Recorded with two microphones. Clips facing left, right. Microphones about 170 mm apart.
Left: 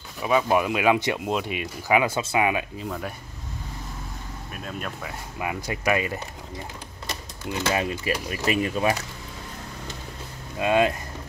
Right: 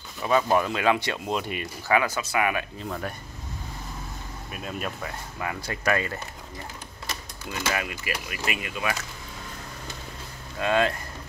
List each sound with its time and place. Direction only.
0.2 s speech: 10° left (ahead or behind)
1.3 s speech: centre (ahead or behind)
1.9 s speech: 20° left (ahead or behind)
2.8 s speech: 5° left (ahead or behind)
4.5 s speech: 5° right (ahead or behind)
5.4 s speech: 15° left (ahead or behind)
7.7 s speech: 30° left (ahead or behind)
10.6 s speech: 15° left (ahead or behind)